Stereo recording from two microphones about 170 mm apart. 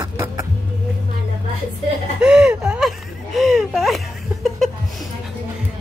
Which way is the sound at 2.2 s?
5° right (ahead or behind).